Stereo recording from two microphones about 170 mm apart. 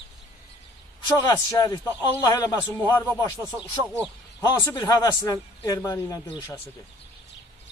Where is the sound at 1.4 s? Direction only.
20° left (ahead or behind).